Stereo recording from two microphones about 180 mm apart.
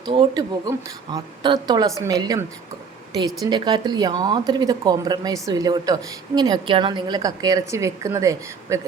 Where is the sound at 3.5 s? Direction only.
25° right (ahead or behind).